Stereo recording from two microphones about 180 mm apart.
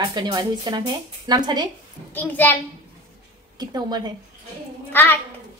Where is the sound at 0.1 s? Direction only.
25° right (ahead or behind).